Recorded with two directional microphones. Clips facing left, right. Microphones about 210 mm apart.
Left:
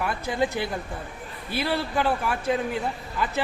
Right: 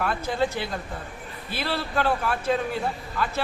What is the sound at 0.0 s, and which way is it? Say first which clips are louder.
Speech: right 1 dB; 15° left (ahead or behind).